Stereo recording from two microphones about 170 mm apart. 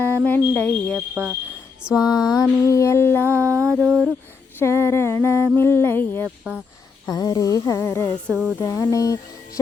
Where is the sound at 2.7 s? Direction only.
15° left (ahead or behind).